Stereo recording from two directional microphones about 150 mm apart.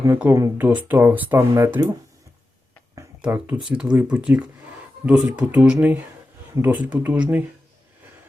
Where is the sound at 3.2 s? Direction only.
10° right (ahead or behind).